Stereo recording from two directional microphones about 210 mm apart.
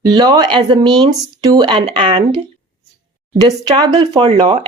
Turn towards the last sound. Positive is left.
turn(degrees=-20)  # may be behind; listen again after turning